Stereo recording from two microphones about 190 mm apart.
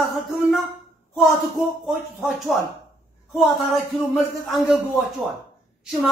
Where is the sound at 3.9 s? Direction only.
Centre (ahead or behind).